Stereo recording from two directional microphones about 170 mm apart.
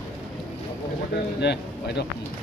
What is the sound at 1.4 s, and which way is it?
Speech, 75° left (ahead or behind).